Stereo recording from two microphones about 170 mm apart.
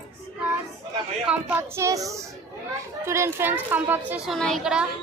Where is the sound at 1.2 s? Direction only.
10° right (ahead or behind).